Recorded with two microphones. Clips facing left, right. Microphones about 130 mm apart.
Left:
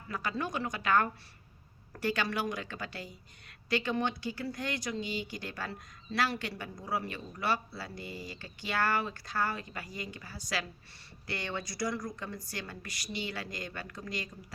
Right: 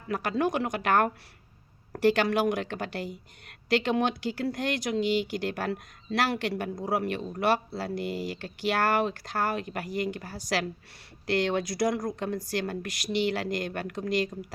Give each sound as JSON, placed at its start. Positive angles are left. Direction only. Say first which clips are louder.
{"t": 0.1, "sound": "speech", "louder": "right 8 dB", "side_deg": -65}
{"t": 2.0, "sound": "speech", "louder": "right 9 dB", "side_deg": -80}
{"t": 3.7, "sound": "speech", "louder": "right 6 dB", "side_deg": -80}
{"t": 6.7, "sound": "speech", "louder": "right 7 dB", "side_deg": -55}
{"t": 11.3, "sound": "speech", "louder": "right 11 dB", "side_deg": -85}
{"t": 11.9, "sound": "speech", "louder": "right 8 dB", "side_deg": -60}